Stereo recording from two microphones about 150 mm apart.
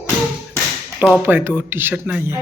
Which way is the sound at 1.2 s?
15° right (ahead or behind).